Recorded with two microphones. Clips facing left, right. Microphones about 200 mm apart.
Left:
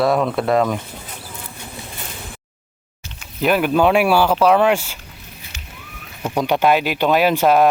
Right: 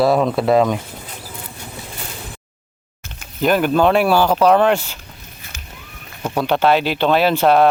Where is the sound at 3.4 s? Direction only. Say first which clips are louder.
Right 1 dB; 5° left (ahead or behind).